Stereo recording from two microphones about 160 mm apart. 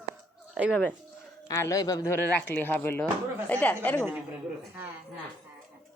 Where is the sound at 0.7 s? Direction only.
10° left (ahead or behind).